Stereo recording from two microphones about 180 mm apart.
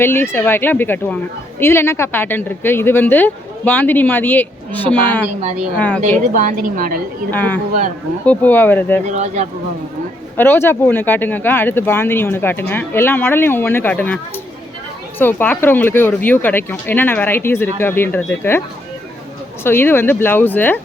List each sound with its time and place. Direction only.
0.0 s a woman's voice: 10° left (ahead or behind)
5.4 s speech: 40° right (ahead or behind)
5.7 s a woman's voice: 10° left (ahead or behind)
6.0 s a woman's voice: 45° right (ahead or behind)
7.3 s a woman's voice: 10° left (ahead or behind)
9.0 s speech: 40° right (ahead or behind)
10.3 s a woman's voice: 10° left (ahead or behind)
15.2 s a woman's voice: 10° left (ahead or behind)
19.6 s a woman's voice: 10° left (ahead or behind)